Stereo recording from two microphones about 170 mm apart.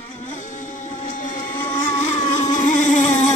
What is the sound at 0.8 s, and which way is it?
Music, 45° left (ahead or behind).